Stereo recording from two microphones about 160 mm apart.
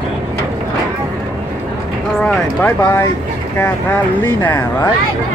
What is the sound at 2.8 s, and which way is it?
Speech, 15° left (ahead or behind).